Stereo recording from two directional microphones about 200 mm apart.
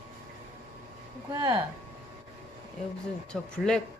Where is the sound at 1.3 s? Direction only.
20° right (ahead or behind).